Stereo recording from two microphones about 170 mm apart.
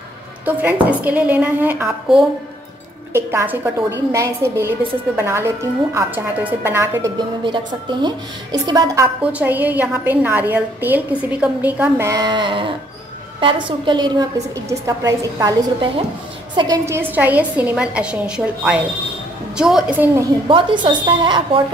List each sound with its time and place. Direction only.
0.5 s a woman's voice: 10° right (ahead or behind)
7.4 s a woman's voice: 25° right (ahead or behind)
9.2 s a woman's voice: 10° right (ahead or behind)
12.1 s a woman's voice: 25° right (ahead or behind); by 20.1 s 5° right (ahead or behind)
20.4 s a woman's voice: 30° right (ahead or behind)